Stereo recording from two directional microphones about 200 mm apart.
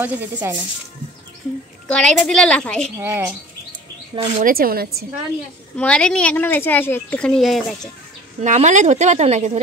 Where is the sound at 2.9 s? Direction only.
10° right (ahead or behind).